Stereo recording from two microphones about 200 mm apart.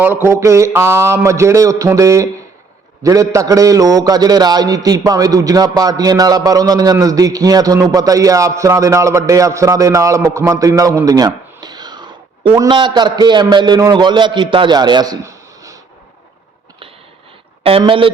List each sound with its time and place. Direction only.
0.0 s a man's voice: 10° right (ahead or behind)
17.6 s speech: 30° right (ahead or behind)